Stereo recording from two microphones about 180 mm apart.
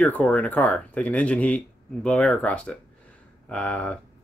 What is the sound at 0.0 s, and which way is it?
Speech, 5° left (ahead or behind).